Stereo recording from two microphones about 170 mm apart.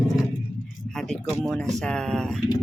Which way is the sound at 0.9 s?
Centre (ahead or behind).